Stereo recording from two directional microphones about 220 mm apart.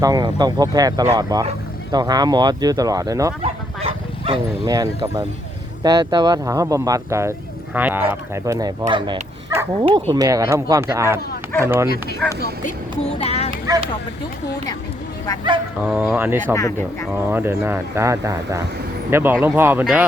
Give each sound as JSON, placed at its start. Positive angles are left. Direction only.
{"t": 0.0, "sound": "speech", "side_deg": -15}
{"t": 3.4, "sound": "bow-wow", "side_deg": -25}
{"t": 5.8, "sound": "speech", "side_deg": -20}
{"t": 12.2, "sound": "speech", "side_deg": 5}
{"t": 12.6, "sound": "speech", "side_deg": 30}
{"t": 13.5, "sound": "vehicle", "side_deg": -20}
{"t": 15.8, "sound": "speech", "side_deg": -10}
{"t": 16.6, "sound": "speech", "side_deg": 15}
{"t": 17.2, "sound": "speech", "side_deg": -10}